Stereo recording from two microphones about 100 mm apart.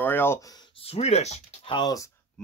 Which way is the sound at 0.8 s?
90° left.